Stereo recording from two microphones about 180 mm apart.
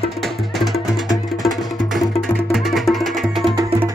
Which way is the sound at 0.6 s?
Centre (ahead or behind).